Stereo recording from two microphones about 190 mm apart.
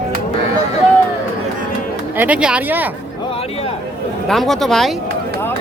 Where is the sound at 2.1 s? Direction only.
10° right (ahead or behind).